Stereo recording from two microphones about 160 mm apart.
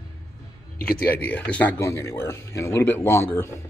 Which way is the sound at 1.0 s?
10° left (ahead or behind).